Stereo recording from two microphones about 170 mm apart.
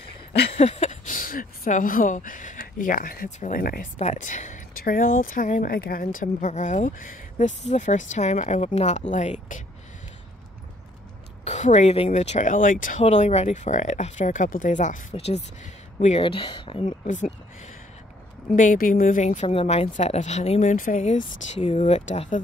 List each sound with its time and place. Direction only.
0.6 s speech: 40° left (ahead or behind); by 3.9 s 60° left (ahead or behind)
4.0 s speech: 45° left (ahead or behind); by 6.0 s 60° left (ahead or behind)
6.1 s speech: 45° left (ahead or behind)
11.4 s speech: 45° left (ahead or behind)
13.0 s speech: 40° left (ahead or behind)
16.8 s speech: 45° left (ahead or behind)
18.5 s speech: 55° left (ahead or behind)